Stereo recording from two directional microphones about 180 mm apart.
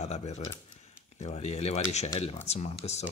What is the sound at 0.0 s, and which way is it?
Speech, 40° left (ahead or behind).